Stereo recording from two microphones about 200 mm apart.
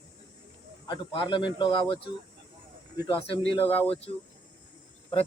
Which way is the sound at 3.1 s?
25° left (ahead or behind).